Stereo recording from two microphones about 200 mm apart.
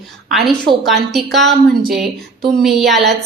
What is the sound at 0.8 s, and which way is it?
A woman's voice, centre (ahead or behind).